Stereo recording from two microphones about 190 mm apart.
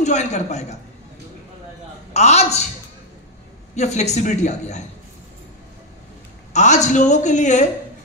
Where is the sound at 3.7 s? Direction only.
35° left (ahead or behind).